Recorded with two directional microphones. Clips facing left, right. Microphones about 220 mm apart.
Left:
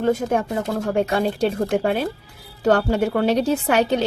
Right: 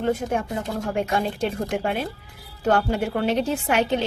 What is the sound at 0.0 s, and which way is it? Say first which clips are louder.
A woman's voice: left 4 dB; 40° left (ahead or behind).